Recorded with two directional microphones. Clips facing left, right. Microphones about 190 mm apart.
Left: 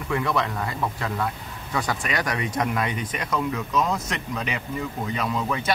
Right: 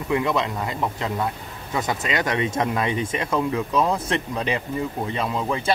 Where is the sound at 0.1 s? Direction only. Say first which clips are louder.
Right 3 dB; 20° right (ahead or behind).